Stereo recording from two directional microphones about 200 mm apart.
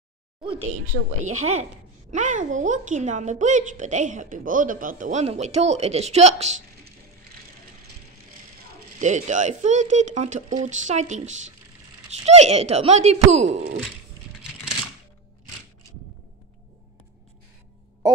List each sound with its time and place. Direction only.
0.4 s a woman's voice: centre (ahead or behind)
1.2 s a woman's voice: 35° right (ahead or behind)
9.0 s a woman's voice: 35° right (ahead or behind)